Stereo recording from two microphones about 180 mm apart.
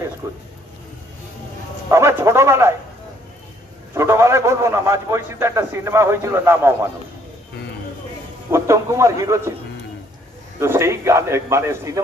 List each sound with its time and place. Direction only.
0.2 s a man's voice: 15° right (ahead or behind)
1.9 s a sound: 15° right (ahead or behind)
3.9 s a man's voice: 15° right (ahead or behind)
8.5 s a man's voice: 15° right (ahead or behind)
10.6 s a man's voice: 15° right (ahead or behind)